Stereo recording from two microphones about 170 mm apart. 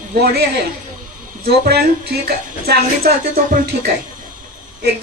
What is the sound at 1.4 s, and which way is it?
A woman's voice, 65° right (ahead or behind).